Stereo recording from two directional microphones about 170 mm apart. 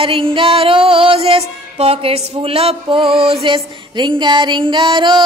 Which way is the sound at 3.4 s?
30° right (ahead or behind).